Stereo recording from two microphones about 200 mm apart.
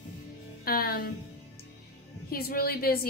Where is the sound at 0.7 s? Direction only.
50° left (ahead or behind).